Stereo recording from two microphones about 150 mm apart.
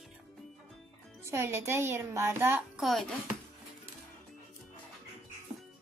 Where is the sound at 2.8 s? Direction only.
Centre (ahead or behind).